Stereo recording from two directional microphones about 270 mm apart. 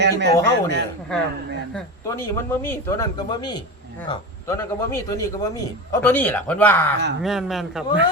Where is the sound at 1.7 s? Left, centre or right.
Centre.